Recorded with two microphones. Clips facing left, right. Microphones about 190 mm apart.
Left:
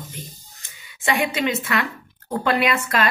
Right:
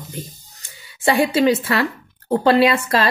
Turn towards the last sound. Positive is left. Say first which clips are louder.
# right 6 dB
turn(degrees=-30)  # may be behind; listen again after turning